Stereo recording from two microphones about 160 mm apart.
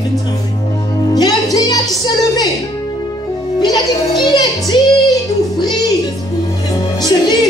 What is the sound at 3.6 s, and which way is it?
Music, 25° left (ahead or behind).